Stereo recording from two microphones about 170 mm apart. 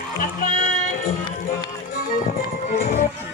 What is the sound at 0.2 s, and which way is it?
Music, 55° left (ahead or behind).